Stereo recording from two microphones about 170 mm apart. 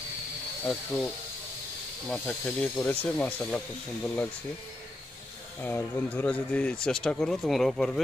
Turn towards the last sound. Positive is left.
turn(degrees=0)  # may be behind; listen again after turning